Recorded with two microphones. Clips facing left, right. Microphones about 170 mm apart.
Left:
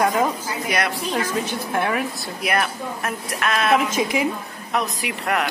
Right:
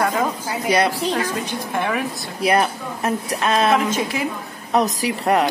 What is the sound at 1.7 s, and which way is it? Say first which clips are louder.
Speech: even; 5° left (ahead or behind).